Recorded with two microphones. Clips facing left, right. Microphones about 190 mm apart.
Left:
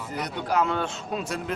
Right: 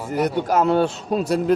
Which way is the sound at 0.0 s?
50° right (ahead or behind).